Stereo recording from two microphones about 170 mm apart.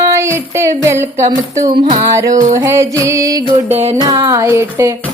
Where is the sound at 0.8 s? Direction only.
15° right (ahead or behind).